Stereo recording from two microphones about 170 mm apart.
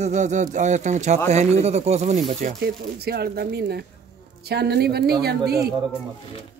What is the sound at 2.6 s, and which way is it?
Speech, 70° right (ahead or behind).